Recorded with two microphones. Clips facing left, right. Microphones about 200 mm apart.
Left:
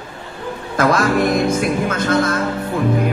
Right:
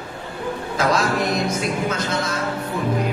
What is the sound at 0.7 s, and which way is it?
A man's voice, 50° left (ahead or behind).